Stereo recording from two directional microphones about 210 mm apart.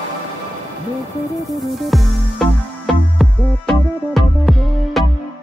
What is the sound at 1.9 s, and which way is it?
Music, centre (ahead or behind).